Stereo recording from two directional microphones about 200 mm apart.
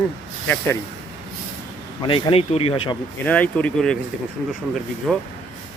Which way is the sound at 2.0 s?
25° left (ahead or behind).